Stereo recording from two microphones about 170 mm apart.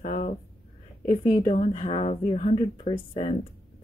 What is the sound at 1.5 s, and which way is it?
A woman's voice, 45° left (ahead or behind).